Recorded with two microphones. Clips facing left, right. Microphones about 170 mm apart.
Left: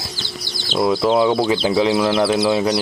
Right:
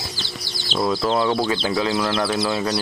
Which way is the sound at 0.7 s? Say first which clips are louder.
Left 5 dB; 15° left (ahead or behind).